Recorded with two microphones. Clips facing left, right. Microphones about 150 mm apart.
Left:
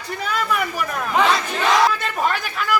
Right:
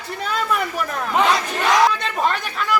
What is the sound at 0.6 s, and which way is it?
Battle cry, centre (ahead or behind).